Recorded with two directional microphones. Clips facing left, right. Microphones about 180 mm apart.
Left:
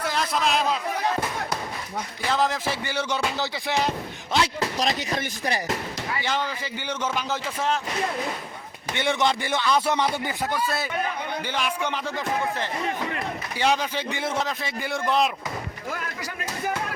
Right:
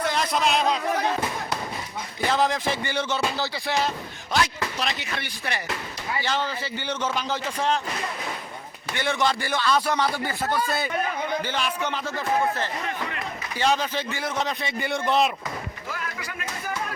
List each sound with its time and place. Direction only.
0.0 s a man's voice: centre (ahead or behind)
2.3 s a man's voice: centre (ahead or behind); by 5.7 s 40° left (ahead or behind)
6.2 s a man's voice: 10° left (ahead or behind)
9.0 s a man's voice: 20° left (ahead or behind)
14.3 s a man's voice: centre (ahead or behind)